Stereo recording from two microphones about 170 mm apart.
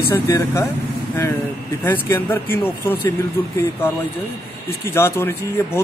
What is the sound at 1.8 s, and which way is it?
Speech, 10° left (ahead or behind).